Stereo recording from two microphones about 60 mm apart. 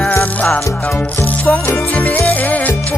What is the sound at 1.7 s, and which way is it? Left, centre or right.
Music, left.